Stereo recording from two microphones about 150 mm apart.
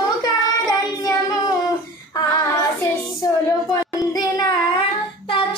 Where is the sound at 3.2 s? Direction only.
25° left (ahead or behind).